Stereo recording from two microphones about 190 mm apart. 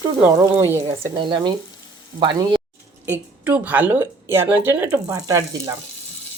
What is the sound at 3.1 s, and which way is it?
A woman's voice, 10° right (ahead or behind).